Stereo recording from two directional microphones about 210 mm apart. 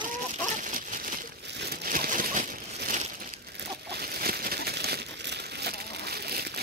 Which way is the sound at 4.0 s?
45° right (ahead or behind).